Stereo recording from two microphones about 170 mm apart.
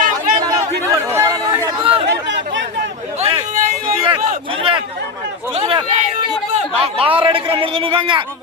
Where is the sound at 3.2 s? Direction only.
30° right (ahead or behind).